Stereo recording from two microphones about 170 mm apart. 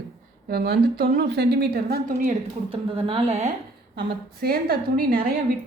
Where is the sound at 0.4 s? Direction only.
70° right (ahead or behind); by 2.3 s 50° right (ahead or behind).